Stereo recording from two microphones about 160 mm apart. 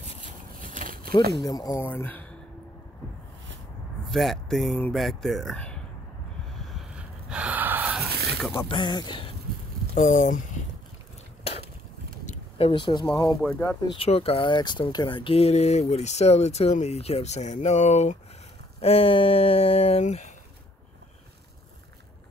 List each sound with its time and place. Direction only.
0.6 s a sound: 55° right (ahead or behind)
1.4 s speech: 25° left (ahead or behind)
1.9 s speech: 10° left (ahead or behind)
4.1 s speech: centre (ahead or behind)
7.2 s gasp: 10° right (ahead or behind)
8.1 s a sound: 90° right
8.6 s speech: 30° left (ahead or behind)
9.9 s speech: 50° left (ahead or behind)
12.3 s a sound: 40° left (ahead or behind)
13.1 s speech: 25° left (ahead or behind)
13.9 s speech: 40° left (ahead or behind)